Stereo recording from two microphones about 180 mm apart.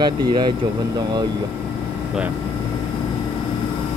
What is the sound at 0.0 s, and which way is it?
Speech, 25° right (ahead or behind).